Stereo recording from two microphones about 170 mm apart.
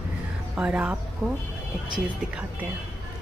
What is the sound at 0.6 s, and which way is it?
A woman's voice, 5° right (ahead or behind).